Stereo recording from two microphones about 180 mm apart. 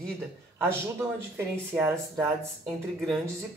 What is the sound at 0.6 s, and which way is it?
Speech, 10° right (ahead or behind).